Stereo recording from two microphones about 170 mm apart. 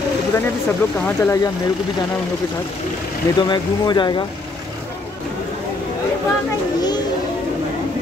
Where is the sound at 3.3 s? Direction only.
25° left (ahead or behind).